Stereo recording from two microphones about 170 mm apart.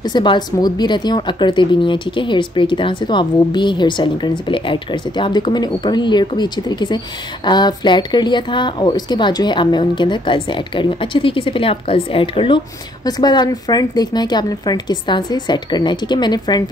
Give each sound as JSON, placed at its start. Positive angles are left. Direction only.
{"t": 0.0, "sound": "speech", "side_deg": 25}